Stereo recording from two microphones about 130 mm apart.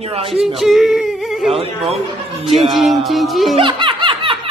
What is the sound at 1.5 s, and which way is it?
Speech, 50° right (ahead or behind).